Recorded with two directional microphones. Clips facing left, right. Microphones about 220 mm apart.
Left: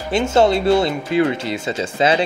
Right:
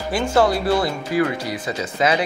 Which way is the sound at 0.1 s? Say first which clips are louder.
Left 3 dB; 25° left (ahead or behind).